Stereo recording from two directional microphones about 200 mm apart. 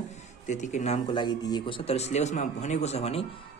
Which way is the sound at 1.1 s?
20° left (ahead or behind).